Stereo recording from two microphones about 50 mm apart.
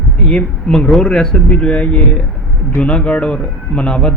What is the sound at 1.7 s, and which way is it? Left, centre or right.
Speech, left.